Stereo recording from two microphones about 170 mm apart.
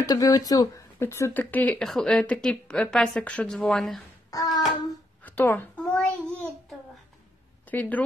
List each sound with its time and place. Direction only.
0.0 s speech: 20° left (ahead or behind); by 4.0 s centre (ahead or behind)
4.3 s hands: 20° left (ahead or behind)
5.2 s a child's voice: 10° left (ahead or behind)
7.6 s speech: 10° left (ahead or behind)